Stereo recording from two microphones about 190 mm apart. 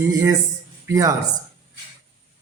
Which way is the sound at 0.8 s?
15° right (ahead or behind).